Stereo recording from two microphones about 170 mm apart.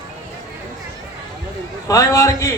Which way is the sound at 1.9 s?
20° left (ahead or behind).